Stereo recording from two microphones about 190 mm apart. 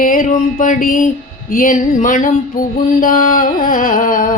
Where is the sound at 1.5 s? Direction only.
45° left (ahead or behind).